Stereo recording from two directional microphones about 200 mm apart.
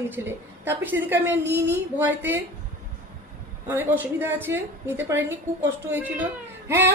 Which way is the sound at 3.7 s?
10° right (ahead or behind).